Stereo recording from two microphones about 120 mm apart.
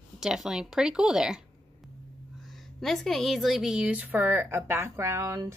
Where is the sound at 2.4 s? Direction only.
Centre (ahead or behind).